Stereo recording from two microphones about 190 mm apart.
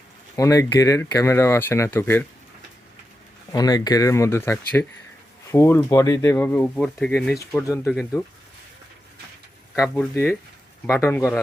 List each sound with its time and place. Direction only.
0.3 s speech: 15° left (ahead or behind)
3.5 s speech: 20° left (ahead or behind); by 8.2 s centre (ahead or behind)
9.9 s speech: 10° left (ahead or behind)